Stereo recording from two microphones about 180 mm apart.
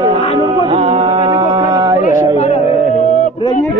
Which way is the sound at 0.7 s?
35° right (ahead or behind).